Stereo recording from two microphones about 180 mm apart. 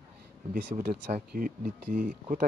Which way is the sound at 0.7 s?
60° right (ahead or behind).